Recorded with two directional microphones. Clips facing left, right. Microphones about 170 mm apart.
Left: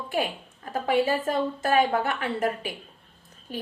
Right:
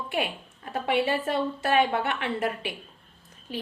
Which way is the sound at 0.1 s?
40° left (ahead or behind).